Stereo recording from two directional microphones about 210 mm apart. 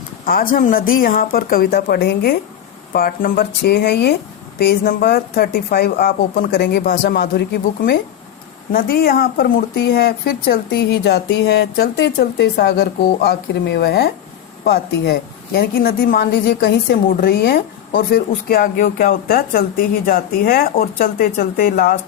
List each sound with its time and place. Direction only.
0.5 s a woman's voice: 40° left (ahead or behind)